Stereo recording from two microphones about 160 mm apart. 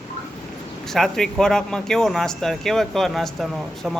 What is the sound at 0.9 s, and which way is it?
A man's voice, centre (ahead or behind).